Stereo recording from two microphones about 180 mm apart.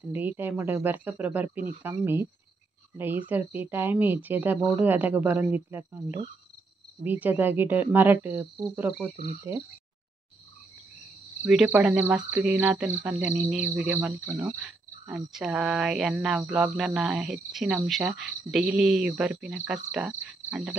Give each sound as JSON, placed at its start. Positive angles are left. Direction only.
{"t": 0.1, "sound": "speech", "side_deg": -10}
{"t": 9.1, "sound": "cricket", "side_deg": -35}
{"t": 11.4, "sound": "speech", "side_deg": -5}
{"t": 14.6, "sound": "speech", "side_deg": 0}